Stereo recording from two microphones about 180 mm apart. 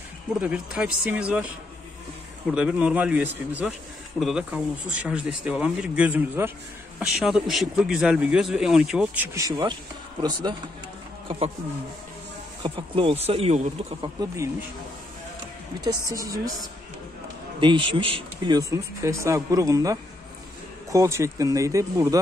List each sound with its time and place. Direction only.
0.4 s speech: 5° right (ahead or behind)
2.5 s a man's voice: 5° right (ahead or behind)
11.2 s speech: 30° right (ahead or behind)
12.6 s speech: 30° right (ahead or behind)
15.8 s speech: 20° right (ahead or behind)
17.6 s speech: 25° right (ahead or behind)